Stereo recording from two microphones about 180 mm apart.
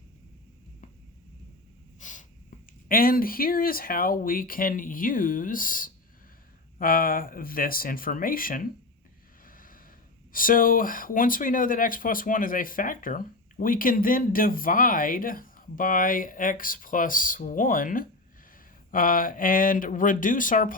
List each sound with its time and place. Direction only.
2.0 s snort: 45° left (ahead or behind)
2.9 s speech: 55° left (ahead or behind)
9.5 s a sound: 50° left (ahead or behind)
10.3 s speech: 50° left (ahead or behind)